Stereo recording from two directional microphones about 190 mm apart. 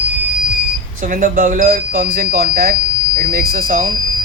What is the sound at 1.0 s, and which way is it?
Speech, 45° right (ahead or behind).